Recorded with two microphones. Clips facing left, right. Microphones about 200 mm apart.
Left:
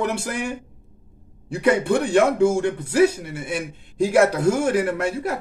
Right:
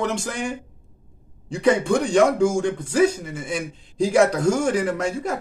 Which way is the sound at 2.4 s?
60° left (ahead or behind).